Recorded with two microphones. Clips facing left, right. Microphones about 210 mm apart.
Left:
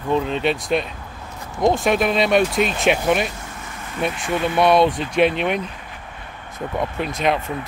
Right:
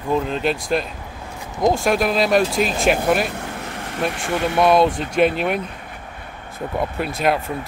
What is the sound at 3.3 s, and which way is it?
Vehicle, 65° right (ahead or behind).